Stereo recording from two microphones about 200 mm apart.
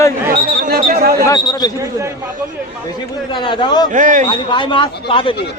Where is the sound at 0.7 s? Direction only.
45° right (ahead or behind).